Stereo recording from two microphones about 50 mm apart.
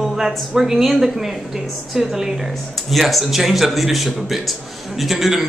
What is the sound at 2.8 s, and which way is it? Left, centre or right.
A man's voice, centre.